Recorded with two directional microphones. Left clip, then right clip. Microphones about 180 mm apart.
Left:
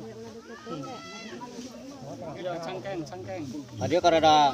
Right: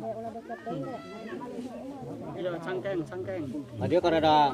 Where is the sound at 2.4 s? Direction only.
40° left (ahead or behind).